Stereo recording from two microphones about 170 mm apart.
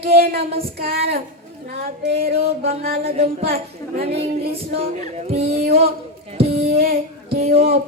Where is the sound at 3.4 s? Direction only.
60° right (ahead or behind).